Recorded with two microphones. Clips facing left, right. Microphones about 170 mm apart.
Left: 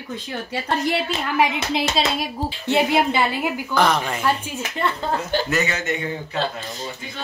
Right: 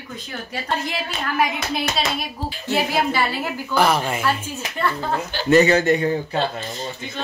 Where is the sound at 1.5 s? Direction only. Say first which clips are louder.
Left 2 dB; 25° left (ahead or behind).